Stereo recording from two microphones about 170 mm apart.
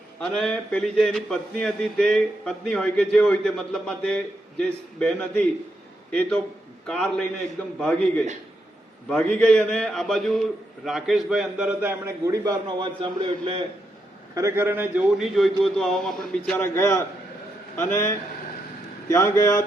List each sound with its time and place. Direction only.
0.2 s speech: 5° left (ahead or behind); by 13.6 s 30° right (ahead or behind)
14.3 s speech: 15° right (ahead or behind); by 16.6 s 5° left (ahead or behind)
16.7 s a man's voice: 15° left (ahead or behind)